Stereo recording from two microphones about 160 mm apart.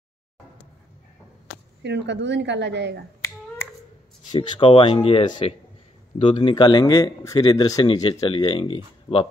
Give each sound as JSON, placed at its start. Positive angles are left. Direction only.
{"t": 1.8, "sound": "speech", "side_deg": -90}
{"t": 4.3, "sound": "a man's voice", "side_deg": 30}